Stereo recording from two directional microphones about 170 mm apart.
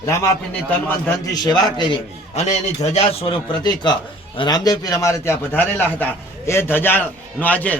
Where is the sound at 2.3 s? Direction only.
40° left (ahead or behind).